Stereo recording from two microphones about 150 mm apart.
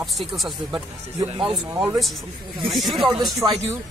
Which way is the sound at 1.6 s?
15° right (ahead or behind).